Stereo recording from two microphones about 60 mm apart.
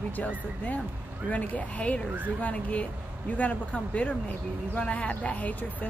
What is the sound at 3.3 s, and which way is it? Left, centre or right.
Speech, left.